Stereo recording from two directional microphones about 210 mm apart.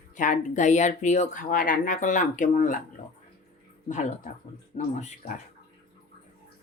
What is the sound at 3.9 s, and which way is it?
Speech, 35° left (ahead or behind).